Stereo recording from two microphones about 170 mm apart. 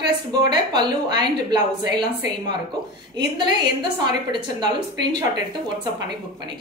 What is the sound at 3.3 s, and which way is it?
A woman's voice, 25° right (ahead or behind).